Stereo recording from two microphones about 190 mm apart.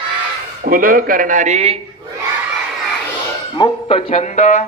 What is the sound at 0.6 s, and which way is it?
Speech, 50° right (ahead or behind).